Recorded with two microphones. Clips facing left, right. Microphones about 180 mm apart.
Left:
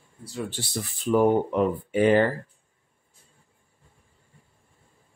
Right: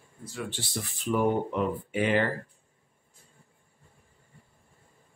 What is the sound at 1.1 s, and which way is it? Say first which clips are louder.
Speech: left 6 dB; 40° left (ahead or behind).